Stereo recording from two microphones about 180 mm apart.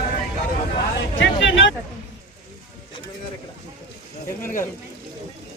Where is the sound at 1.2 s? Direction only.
90° left.